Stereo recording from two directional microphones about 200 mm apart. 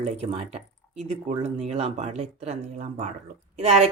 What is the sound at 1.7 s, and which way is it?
Speech, 35° right (ahead or behind).